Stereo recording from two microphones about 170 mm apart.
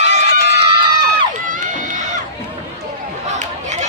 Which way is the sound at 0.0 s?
40° right (ahead or behind).